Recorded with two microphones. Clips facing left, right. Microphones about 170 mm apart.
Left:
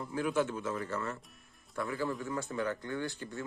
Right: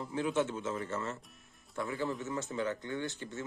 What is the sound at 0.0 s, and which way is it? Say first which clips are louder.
Speech: even; 25° right (ahead or behind).